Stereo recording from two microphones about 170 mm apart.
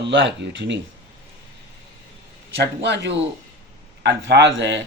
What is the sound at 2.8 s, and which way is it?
Speech, 90° right.